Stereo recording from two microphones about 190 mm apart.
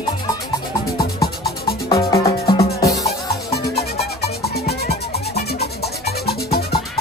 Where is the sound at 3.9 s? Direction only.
55° left (ahead or behind).